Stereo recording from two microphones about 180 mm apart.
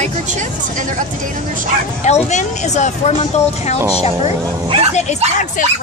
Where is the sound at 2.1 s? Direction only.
40° left (ahead or behind).